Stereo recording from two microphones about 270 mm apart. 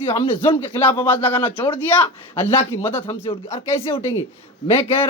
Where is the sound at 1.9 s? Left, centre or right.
Centre.